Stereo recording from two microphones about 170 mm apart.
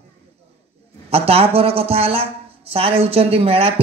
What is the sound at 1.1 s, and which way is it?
Speech, 35° right (ahead or behind).